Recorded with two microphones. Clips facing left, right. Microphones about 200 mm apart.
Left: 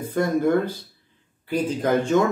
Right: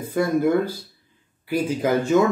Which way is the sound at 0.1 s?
10° right (ahead or behind).